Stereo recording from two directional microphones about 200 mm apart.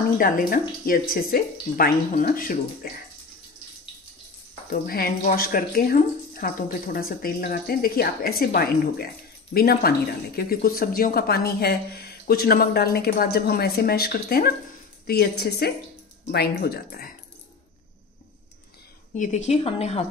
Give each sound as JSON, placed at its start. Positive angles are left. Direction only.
{"t": 0.2, "sound": "speech", "side_deg": 45}
{"t": 4.6, "sound": "speech", "side_deg": 50}
{"t": 19.1, "sound": "speech", "side_deg": 35}